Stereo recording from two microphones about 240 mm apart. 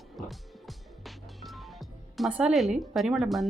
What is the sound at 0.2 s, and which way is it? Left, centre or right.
Music, centre.